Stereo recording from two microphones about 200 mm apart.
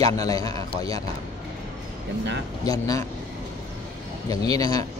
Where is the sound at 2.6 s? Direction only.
15° left (ahead or behind).